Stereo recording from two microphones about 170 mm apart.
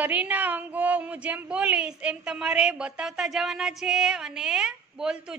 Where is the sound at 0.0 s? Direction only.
10° right (ahead or behind).